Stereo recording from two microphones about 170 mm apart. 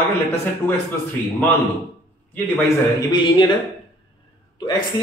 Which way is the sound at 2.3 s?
10° left (ahead or behind).